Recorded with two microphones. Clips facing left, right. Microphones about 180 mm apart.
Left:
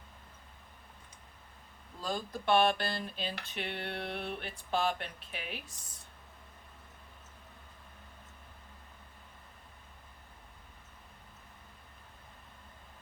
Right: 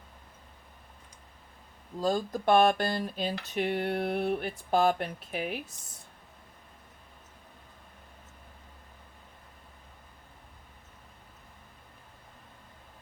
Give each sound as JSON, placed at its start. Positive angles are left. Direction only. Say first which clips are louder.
{"t": 2.0, "sound": "speech", "louder": "right 9 dB", "side_deg": -45}